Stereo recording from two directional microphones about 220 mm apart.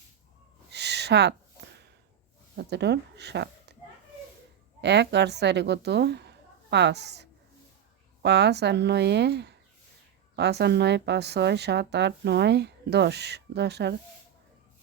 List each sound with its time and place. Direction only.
0.7 s a sound: 50° right (ahead or behind)
2.6 s speech: 50° right (ahead or behind)
4.8 s a woman's voice: 50° right (ahead or behind)